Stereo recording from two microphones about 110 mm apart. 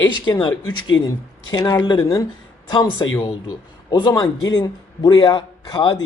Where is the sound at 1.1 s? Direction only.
35° left (ahead or behind).